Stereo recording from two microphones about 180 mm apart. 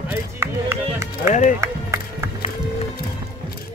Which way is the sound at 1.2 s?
40° left (ahead or behind).